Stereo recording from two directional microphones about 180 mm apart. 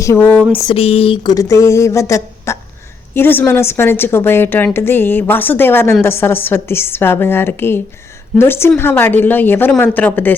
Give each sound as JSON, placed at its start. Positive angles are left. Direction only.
{"t": 0.0, "sound": "a woman's voice", "side_deg": 15}
{"t": 0.7, "sound": "a woman's voice", "side_deg": 30}